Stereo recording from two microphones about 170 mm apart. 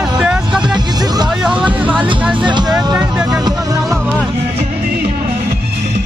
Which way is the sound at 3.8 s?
5° left (ahead or behind).